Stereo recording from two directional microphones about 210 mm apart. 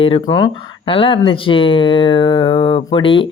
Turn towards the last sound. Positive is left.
turn(degrees=25)  # may be behind; listen again after turning